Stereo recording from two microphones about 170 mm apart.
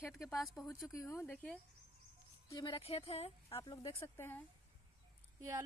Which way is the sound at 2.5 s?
25° left (ahead or behind).